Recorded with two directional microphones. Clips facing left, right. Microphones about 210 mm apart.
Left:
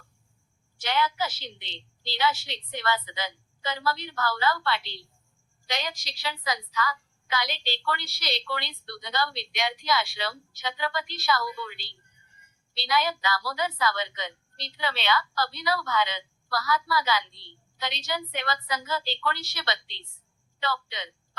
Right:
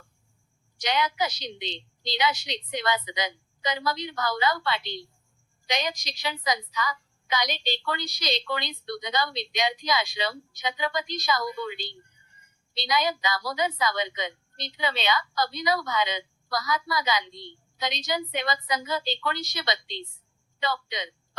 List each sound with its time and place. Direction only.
0.8 s a woman's voice: 15° right (ahead or behind)